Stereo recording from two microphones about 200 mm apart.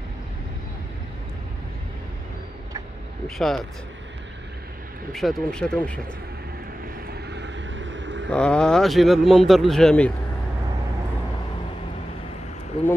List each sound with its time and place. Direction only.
3.3 s speech: centre (ahead or behind)
5.1 s speech: centre (ahead or behind)
7.1 s vehicle: 55° right (ahead or behind)
8.3 s speech: 5° left (ahead or behind)